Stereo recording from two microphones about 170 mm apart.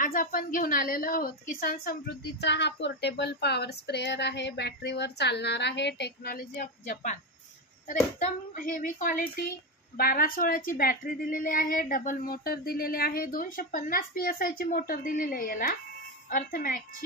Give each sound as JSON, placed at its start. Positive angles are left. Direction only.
{"t": 0.0, "sound": "a woman's voice", "side_deg": 55}
{"t": 2.4, "sound": "speech", "side_deg": 90}
{"t": 6.6, "sound": "a woman's voice", "side_deg": 45}